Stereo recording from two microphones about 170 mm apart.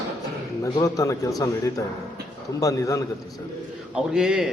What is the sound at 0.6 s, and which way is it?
A man's voice, 20° left (ahead or behind).